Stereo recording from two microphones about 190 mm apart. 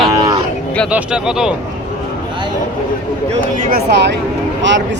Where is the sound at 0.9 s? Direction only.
5° right (ahead or behind).